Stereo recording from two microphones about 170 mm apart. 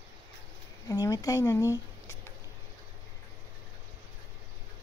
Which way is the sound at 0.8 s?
20° left (ahead or behind).